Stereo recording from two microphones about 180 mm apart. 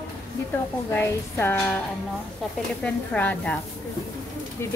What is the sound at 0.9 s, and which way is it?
Speech, 10° left (ahead or behind).